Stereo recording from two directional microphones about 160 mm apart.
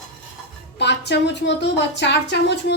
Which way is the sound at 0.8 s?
90° left.